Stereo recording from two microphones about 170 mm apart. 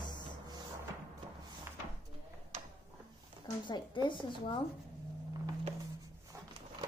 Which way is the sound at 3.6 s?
25° left (ahead or behind).